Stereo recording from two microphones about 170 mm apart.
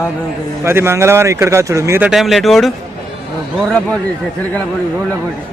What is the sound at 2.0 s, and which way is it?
Speech, centre (ahead or behind).